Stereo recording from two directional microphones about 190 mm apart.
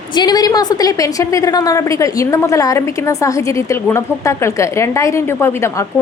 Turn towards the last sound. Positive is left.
turn(degrees=15)  # may be behind; listen again after turning